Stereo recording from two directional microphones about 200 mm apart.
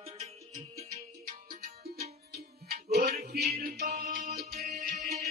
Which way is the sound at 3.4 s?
50° right (ahead or behind).